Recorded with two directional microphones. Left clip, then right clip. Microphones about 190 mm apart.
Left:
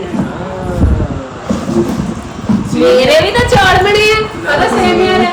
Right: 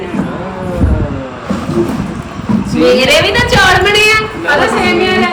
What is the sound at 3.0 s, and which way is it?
Speech, 45° left (ahead or behind).